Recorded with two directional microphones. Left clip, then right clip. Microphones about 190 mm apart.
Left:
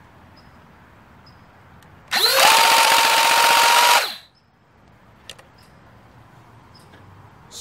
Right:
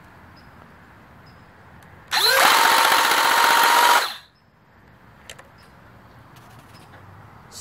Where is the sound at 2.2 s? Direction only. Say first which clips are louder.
Left 1 dB; 20° left (ahead or behind).